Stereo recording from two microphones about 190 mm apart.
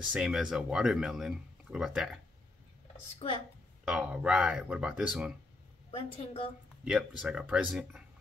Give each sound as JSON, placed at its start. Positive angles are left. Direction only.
{"t": 0.1, "sound": "speech", "side_deg": -5}
{"t": 3.8, "sound": "speech", "side_deg": -5}
{"t": 5.9, "sound": "a woman's voice", "side_deg": 30}
{"t": 6.8, "sound": "speech", "side_deg": -5}